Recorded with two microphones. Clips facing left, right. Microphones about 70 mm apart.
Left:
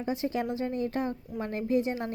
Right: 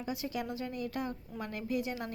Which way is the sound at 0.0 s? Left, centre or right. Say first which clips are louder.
Left 7 dB; left.